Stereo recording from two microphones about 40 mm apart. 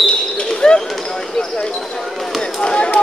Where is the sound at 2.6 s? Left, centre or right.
Left.